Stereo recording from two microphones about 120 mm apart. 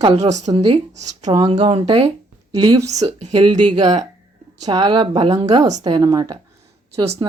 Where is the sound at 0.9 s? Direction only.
70° right (ahead or behind).